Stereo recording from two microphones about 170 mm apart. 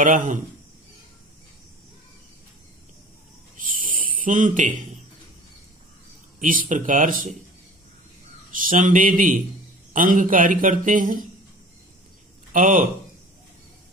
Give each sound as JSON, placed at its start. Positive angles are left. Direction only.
{"t": 0.0, "sound": "speech", "side_deg": -50}
{"t": 3.5, "sound": "a sound", "side_deg": -50}
{"t": 6.4, "sound": "speech", "side_deg": -55}
{"t": 8.5, "sound": "speech", "side_deg": -55}
{"t": 12.5, "sound": "speech", "side_deg": -55}